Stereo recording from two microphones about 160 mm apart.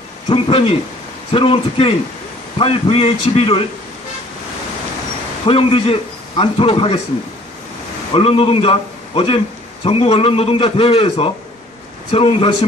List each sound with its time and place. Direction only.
0.3 s a man's voice: 35° left (ahead or behind)
5.5 s a man's voice: 35° left (ahead or behind)
8.1 s a man's voice: 35° left (ahead or behind)